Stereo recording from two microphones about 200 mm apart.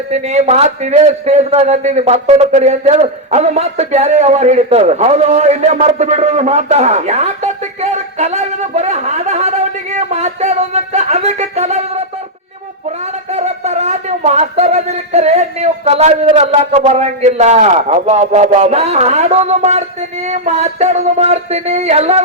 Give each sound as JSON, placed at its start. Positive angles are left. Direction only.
{"t": 0.1, "sound": "a man's voice", "side_deg": -35}
{"t": 13.3, "sound": "a man's voice", "side_deg": -35}